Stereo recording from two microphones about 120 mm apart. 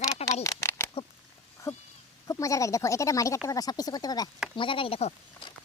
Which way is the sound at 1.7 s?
60° left (ahead or behind).